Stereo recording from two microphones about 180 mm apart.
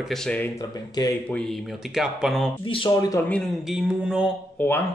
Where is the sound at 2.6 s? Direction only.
30° left (ahead or behind).